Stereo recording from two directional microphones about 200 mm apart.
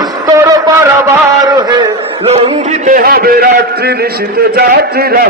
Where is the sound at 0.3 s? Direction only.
15° right (ahead or behind).